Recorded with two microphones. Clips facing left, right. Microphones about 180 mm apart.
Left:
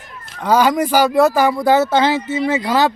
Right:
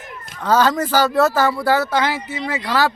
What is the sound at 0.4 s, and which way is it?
Speech, 10° left (ahead or behind).